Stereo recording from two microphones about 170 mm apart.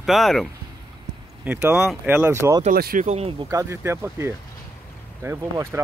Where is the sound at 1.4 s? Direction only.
5° right (ahead or behind).